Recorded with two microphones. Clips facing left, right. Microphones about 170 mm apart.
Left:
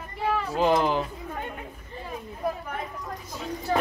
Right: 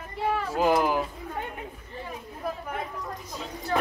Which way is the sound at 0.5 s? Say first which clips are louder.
Left 1 dB; 10° right (ahead or behind).